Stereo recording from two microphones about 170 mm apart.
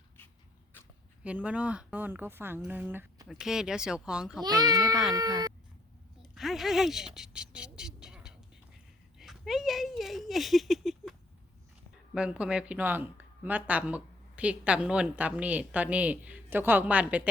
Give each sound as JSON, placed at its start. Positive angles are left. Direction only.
{"t": 1.2, "sound": "speech", "side_deg": -5}
{"t": 4.4, "sound": "a child's voice", "side_deg": -20}
{"t": 6.3, "sound": "speech", "side_deg": 0}
{"t": 12.1, "sound": "speech", "side_deg": -5}